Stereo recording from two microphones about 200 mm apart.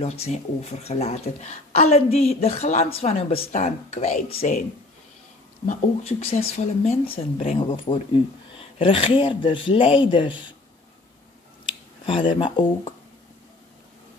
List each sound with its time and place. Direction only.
0.0 s a woman's voice: 30° left (ahead or behind)
5.7 s speech: 35° left (ahead or behind)
11.6 s speech: 25° left (ahead or behind)